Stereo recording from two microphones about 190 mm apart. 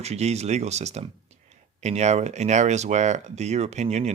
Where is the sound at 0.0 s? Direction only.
35° right (ahead or behind).